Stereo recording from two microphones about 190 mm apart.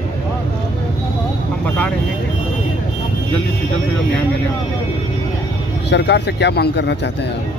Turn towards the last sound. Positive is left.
turn(degrees=60)  # may be behind; listen again after turning